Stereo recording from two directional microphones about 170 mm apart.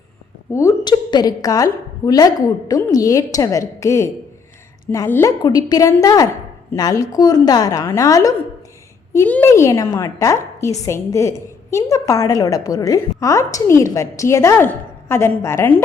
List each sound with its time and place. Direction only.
0.5 s a woman's voice: 15° left (ahead or behind)